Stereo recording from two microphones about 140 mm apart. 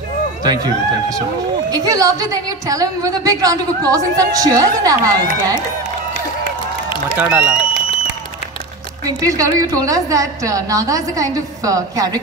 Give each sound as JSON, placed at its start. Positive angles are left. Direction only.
{"t": 1.7, "sound": "a woman's voice", "side_deg": -25}
{"t": 7.2, "sound": "a man's voice", "side_deg": -10}
{"t": 9.0, "sound": "a woman's voice", "side_deg": -25}